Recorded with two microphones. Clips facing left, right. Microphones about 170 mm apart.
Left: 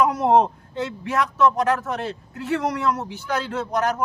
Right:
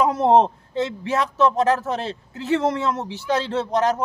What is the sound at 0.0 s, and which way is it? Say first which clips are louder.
A man's voice: right 1 dB; 25° right (ahead or behind).